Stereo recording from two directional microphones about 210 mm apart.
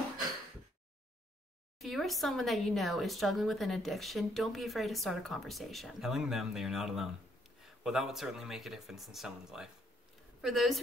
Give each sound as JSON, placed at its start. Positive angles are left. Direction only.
{"t": 1.8, "sound": "speech", "side_deg": 0}